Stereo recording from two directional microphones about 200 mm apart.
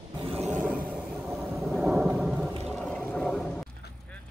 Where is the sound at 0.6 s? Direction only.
5° right (ahead or behind).